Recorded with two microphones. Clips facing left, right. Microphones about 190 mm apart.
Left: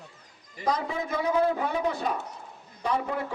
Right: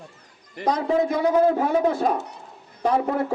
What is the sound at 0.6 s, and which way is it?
Speech, 70° right (ahead or behind).